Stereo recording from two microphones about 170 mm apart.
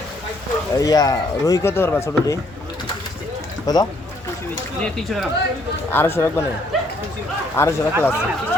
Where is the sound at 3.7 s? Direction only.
20° left (ahead or behind).